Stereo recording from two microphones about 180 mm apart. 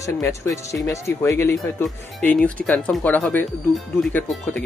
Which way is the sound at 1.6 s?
Centre (ahead or behind).